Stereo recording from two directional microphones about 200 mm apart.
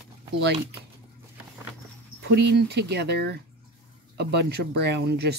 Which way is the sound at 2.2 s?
55° right (ahead or behind).